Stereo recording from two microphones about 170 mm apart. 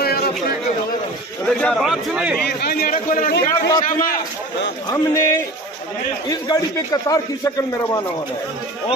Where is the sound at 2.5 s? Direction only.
65° left (ahead or behind).